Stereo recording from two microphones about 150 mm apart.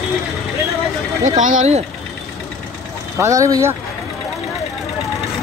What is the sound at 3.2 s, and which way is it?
Speech, 20° right (ahead or behind).